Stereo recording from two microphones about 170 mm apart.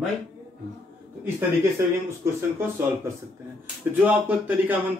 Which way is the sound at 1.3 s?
15° right (ahead or behind).